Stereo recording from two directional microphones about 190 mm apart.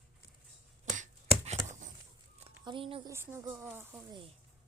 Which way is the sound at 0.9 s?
40° right (ahead or behind).